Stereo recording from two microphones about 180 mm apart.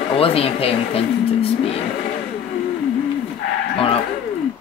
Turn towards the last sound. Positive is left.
turn(degrees=30)  # may be behind; listen again after turning